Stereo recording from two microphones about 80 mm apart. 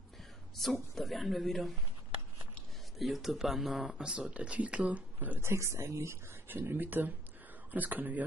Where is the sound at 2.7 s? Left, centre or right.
Centre.